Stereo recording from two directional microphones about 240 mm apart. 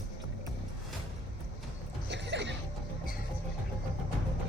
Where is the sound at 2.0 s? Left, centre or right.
Right.